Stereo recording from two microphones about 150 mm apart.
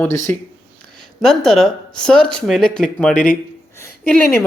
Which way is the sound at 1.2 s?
Centre (ahead or behind).